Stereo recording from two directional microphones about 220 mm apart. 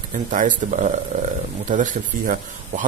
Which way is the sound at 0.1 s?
35° right (ahead or behind).